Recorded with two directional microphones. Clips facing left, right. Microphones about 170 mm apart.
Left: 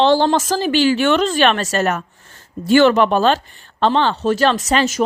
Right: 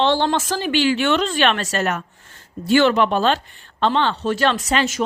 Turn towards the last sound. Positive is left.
turn(degrees=40)  # may be behind; listen again after turning